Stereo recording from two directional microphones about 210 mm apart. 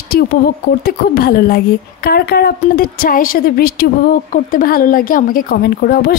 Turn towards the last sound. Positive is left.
turn(degrees=45)  # may be behind; listen again after turning